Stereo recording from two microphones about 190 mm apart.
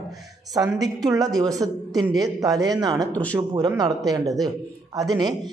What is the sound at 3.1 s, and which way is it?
Speech, 5° left (ahead or behind).